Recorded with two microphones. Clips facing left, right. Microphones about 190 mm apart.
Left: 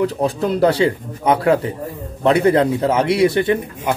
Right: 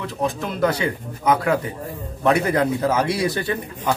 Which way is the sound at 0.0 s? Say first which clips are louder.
Left 7 dB; 35° left (ahead or behind).